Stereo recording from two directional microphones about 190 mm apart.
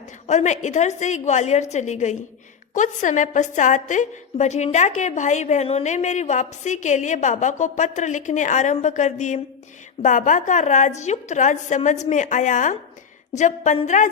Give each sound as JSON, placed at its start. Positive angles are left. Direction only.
{"t": 0.3, "sound": "a woman's voice", "side_deg": 35}